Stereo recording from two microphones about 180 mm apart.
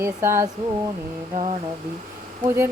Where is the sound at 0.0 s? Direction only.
15° right (ahead or behind).